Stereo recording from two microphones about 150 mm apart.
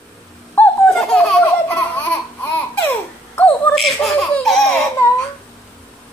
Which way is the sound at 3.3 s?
10° left (ahead or behind).